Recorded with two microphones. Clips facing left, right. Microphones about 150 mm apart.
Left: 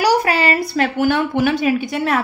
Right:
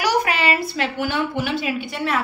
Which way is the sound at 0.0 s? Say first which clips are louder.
Left 4 dB; 35° left (ahead or behind).